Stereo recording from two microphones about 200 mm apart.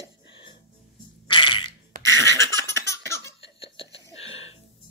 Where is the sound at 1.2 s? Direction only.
25° left (ahead or behind).